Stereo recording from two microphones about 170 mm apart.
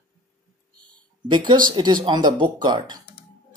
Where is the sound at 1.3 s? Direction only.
25° right (ahead or behind).